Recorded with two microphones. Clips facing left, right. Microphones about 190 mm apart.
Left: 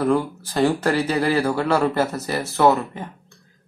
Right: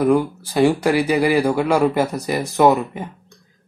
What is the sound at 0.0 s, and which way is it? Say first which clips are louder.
A man's voice: right 4 dB; 15° right (ahead or behind).